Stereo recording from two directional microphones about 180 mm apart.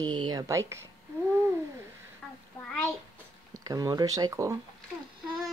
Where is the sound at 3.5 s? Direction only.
20° right (ahead or behind).